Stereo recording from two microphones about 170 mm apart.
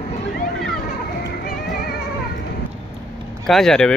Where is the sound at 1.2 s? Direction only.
70° left (ahead or behind).